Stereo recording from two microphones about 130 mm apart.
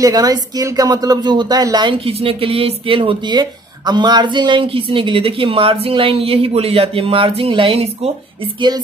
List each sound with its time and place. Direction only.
0.0 s speech: 30° right (ahead or behind)
2.0 s speech: 45° right (ahead or behind)
8.5 s music: 35° right (ahead or behind)